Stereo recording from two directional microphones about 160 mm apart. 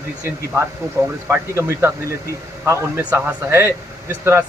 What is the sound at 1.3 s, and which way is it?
Speech, 15° right (ahead or behind).